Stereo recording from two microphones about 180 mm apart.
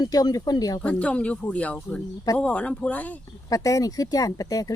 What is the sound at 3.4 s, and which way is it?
Speech, 20° left (ahead or behind).